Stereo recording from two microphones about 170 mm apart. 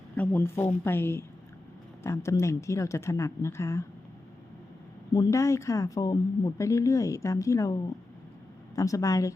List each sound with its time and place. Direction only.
0.2 s speech: 15° left (ahead or behind)
5.1 s speech: 20° left (ahead or behind)